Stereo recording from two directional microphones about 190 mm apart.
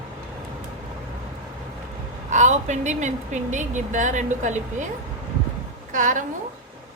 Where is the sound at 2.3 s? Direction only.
40° right (ahead or behind).